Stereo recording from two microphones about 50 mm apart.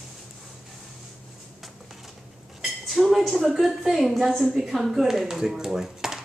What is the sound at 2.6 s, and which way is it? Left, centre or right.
A woman's voice, centre.